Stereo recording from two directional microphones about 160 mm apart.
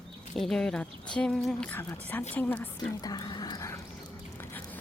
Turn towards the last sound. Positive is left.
turn(degrees=10)  # may be behind; listen again after turning